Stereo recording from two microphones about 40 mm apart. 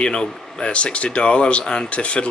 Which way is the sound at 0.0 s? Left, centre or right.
Left.